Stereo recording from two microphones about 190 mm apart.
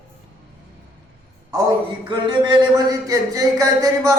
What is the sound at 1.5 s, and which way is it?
A man's voice, 20° right (ahead or behind).